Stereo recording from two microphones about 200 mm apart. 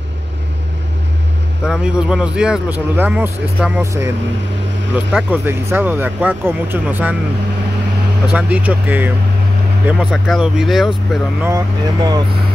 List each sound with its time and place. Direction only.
1.7 s a man's voice: 5° right (ahead or behind)
8.3 s a man's voice: 5° right (ahead or behind)
11.4 s speech: 20° right (ahead or behind)